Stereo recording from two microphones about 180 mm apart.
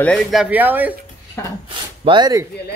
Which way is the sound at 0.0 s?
5° left (ahead or behind).